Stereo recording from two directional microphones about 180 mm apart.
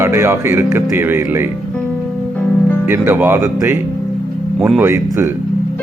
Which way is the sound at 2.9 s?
10° right (ahead or behind).